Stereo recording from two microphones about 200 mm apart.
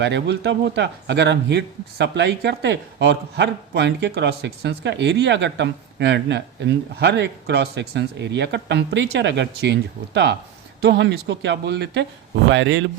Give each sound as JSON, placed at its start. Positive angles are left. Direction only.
{"t": 0.0, "sound": "speech", "side_deg": -60}
{"t": 10.8, "sound": "speech", "side_deg": -60}